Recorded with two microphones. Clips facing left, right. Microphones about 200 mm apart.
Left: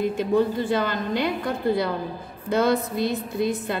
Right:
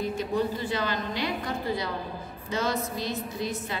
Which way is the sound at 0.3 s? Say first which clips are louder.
Left 8 dB; 50° left (ahead or behind).